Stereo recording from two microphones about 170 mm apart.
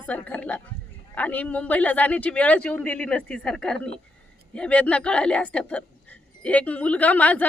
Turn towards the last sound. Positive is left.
turn(degrees=10)  # may be behind; listen again after turning